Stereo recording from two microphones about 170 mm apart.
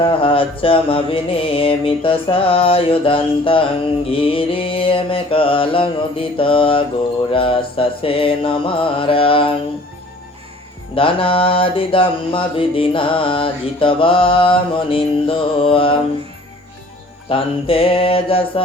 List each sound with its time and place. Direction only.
0.0 s mantra: 30° left (ahead or behind)
10.9 s mantra: 30° left (ahead or behind)
17.2 s mantra: 35° left (ahead or behind)